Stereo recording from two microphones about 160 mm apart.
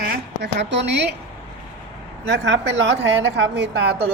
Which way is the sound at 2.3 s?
90° right.